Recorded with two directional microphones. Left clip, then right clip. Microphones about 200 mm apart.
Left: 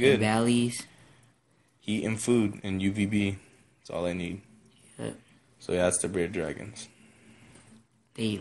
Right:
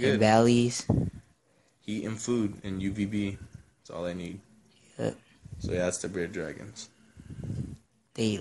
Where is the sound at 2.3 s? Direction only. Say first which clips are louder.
Left 4 dB; centre (ahead or behind).